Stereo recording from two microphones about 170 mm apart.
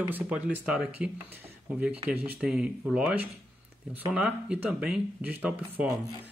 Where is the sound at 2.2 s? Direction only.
5° right (ahead or behind).